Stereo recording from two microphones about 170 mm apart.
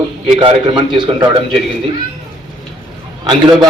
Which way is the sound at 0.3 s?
30° right (ahead or behind).